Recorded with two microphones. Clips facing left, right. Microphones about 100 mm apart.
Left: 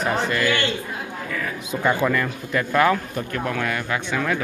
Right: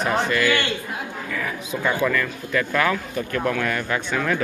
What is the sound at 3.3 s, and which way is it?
Speech, 10° left (ahead or behind).